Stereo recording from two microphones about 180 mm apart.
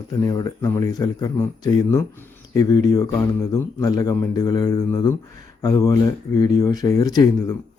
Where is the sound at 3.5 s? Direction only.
20° left (ahead or behind).